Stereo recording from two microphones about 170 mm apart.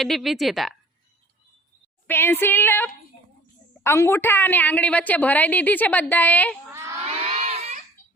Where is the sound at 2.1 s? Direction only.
15° left (ahead or behind).